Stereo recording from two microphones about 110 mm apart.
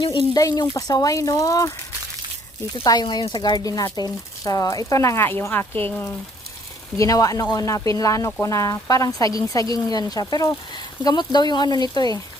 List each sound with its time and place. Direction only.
0.0 s speech: 45° left (ahead or behind)
0.3 s speech: 30° left (ahead or behind)
2.8 s speech: 40° left (ahead or behind); by 6.1 s 20° left (ahead or behind)
7.0 s speech: 30° left (ahead or behind)